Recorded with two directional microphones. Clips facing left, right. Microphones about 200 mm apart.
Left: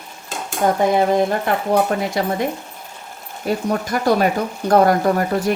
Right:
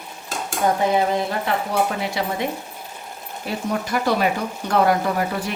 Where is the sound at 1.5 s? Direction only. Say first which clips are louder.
Left 4 dB; 50° left (ahead or behind).